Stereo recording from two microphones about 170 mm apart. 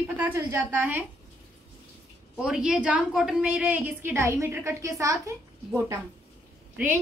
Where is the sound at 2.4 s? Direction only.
5° right (ahead or behind).